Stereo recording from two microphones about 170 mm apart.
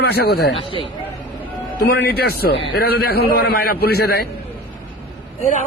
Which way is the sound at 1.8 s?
70° left (ahead or behind).